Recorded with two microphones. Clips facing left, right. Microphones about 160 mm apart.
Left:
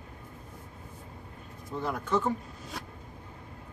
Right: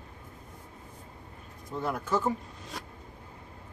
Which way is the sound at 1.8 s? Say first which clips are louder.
Even; 5° right (ahead or behind).